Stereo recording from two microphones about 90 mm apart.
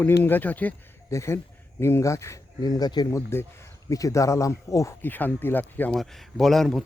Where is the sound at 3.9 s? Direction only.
40° left (ahead or behind).